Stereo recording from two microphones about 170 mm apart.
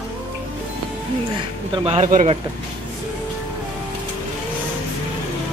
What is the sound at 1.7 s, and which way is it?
Speech, 35° right (ahead or behind).